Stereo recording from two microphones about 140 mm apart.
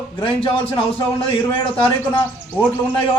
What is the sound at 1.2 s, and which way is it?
A man's voice, 35° left (ahead or behind).